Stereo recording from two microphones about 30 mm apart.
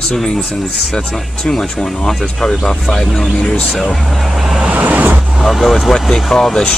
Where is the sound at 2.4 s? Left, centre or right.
Left.